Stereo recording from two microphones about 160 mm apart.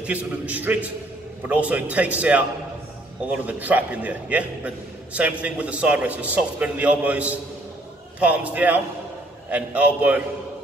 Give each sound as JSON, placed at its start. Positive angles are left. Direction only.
{"t": 0.0, "sound": "a man's voice", "side_deg": -10}